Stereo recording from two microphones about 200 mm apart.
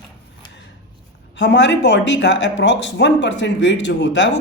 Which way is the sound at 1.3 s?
60° left (ahead or behind).